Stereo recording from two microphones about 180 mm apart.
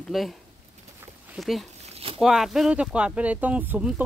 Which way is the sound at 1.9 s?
35° right (ahead or behind).